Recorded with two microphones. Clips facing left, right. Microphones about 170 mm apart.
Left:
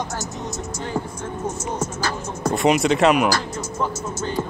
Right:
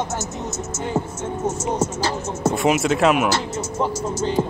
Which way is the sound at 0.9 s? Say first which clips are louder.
Right 3 dB; 25° right (ahead or behind).